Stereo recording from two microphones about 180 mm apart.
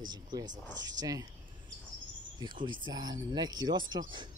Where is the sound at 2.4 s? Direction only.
25° right (ahead or behind).